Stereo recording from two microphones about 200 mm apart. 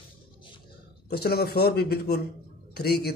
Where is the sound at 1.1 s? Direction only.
50° left (ahead or behind).